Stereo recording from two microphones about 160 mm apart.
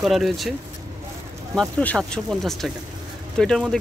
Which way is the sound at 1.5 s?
5° left (ahead or behind).